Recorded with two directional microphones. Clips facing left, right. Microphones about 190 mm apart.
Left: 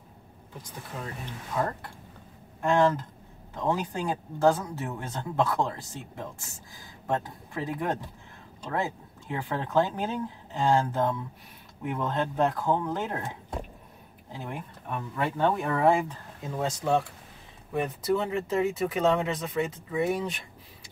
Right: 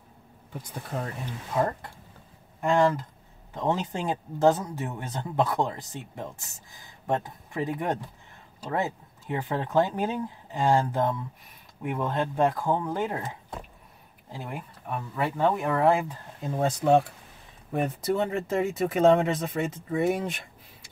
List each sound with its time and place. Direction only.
1.5 s speech: 20° right (ahead or behind)
14.3 s speech: 10° right (ahead or behind)
16.6 s speech: 55° right (ahead or behind)